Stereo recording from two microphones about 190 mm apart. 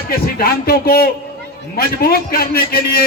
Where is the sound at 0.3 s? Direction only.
50° left (ahead or behind).